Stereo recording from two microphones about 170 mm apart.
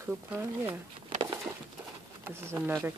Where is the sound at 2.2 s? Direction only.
15° right (ahead or behind).